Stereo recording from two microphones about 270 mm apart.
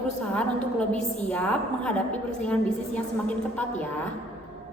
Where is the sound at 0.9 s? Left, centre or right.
Left.